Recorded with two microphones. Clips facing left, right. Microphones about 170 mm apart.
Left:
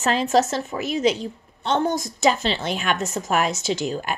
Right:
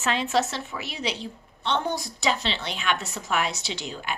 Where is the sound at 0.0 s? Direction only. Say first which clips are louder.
Left 5 dB; 40° left (ahead or behind).